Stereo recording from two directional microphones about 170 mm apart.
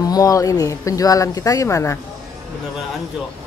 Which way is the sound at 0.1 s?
20° left (ahead or behind).